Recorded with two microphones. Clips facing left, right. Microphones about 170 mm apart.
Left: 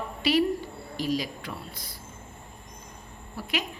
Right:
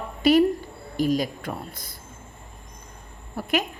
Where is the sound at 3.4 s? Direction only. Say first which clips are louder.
Right 6 dB; 50° right (ahead or behind).